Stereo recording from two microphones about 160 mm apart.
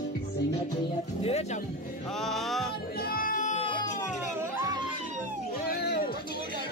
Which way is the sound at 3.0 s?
65° left (ahead or behind).